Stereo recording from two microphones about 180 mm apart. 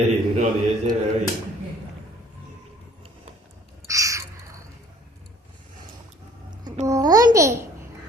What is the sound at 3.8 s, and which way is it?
Crow, 15° right (ahead or behind).